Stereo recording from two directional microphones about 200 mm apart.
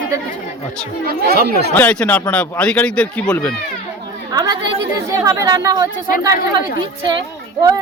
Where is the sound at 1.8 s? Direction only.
5° left (ahead or behind).